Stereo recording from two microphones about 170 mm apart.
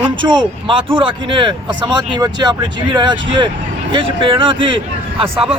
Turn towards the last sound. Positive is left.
turn(degrees=-35)  # may be behind; listen again after turning